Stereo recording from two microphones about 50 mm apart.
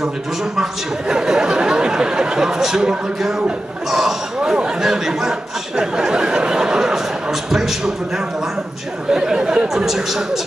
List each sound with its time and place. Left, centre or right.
0.6 s speech: centre
5.8 s a sound: centre
9.1 s speech: centre